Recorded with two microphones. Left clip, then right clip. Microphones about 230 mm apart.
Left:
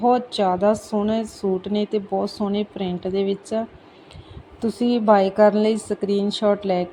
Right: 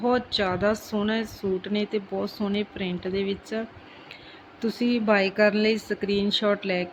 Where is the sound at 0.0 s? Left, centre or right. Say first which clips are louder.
Left 5 dB; centre.